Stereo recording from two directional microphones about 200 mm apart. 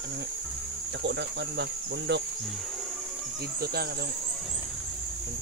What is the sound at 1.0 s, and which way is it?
Cricket, 60° right (ahead or behind).